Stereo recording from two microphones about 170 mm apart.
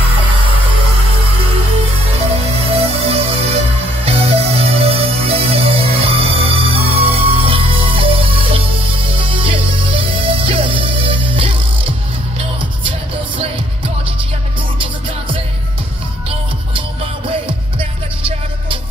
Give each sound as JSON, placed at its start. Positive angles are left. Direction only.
{"t": 2.1, "sound": "music", "side_deg": -35}
{"t": 14.8, "sound": "music", "side_deg": -30}
{"t": 17.5, "sound": "music", "side_deg": -30}